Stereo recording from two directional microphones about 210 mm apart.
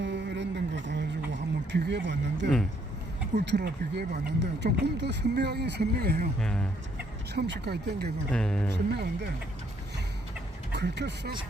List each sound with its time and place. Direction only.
0.0 s a sound: 55° right (ahead or behind)
1.7 s speech: 55° right (ahead or behind)
6.4 s speech: 5° left (ahead or behind)
7.3 s speech: 55° right (ahead or behind)
8.3 s speech: 5° left (ahead or behind)
8.7 s speech: 50° right (ahead or behind)
10.7 s speech: 55° right (ahead or behind)